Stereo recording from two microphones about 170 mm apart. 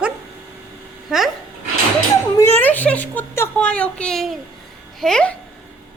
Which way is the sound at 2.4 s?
10° left (ahead or behind).